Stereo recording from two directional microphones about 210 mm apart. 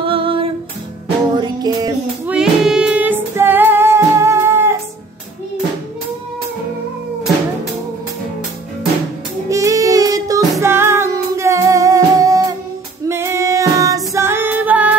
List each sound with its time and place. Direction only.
0.0 s music: 25° right (ahead or behind)
2.2 s music: 5° right (ahead or behind)
9.5 s child singing: 15° right (ahead or behind)
10.6 s music: 10° right (ahead or behind)
13.1 s female singing: 15° right (ahead or behind)